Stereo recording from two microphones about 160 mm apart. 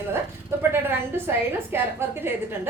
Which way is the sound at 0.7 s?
15° right (ahead or behind).